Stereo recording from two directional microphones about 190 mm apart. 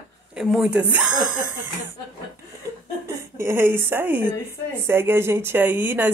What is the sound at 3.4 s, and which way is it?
A woman's voice, 15° right (ahead or behind).